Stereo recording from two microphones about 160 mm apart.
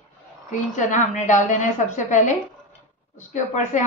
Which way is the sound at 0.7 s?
50° left (ahead or behind).